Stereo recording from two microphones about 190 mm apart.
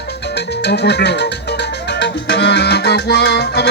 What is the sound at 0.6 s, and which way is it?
Speech, 60° left (ahead or behind).